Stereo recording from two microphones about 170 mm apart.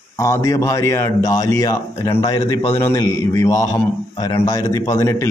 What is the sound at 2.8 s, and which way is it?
A man's voice, 15° left (ahead or behind).